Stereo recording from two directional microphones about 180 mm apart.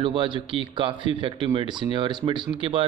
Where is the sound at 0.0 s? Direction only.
30° right (ahead or behind).